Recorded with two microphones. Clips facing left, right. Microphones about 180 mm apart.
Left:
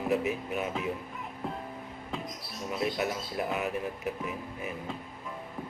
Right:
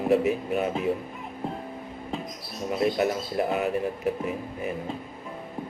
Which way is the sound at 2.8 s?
45° right (ahead or behind).